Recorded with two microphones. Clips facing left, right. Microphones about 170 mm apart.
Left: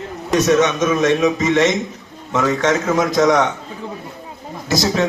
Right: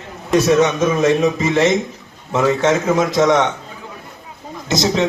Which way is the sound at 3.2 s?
Centre (ahead or behind).